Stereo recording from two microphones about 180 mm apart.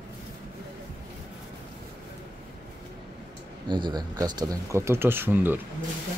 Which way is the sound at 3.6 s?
25° right (ahead or behind).